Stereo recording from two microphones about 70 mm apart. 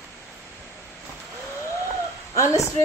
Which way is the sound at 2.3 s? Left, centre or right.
Left.